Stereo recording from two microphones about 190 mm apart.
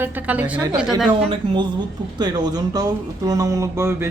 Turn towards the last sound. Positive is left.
turn(degrees=-15)  # may be behind; listen again after turning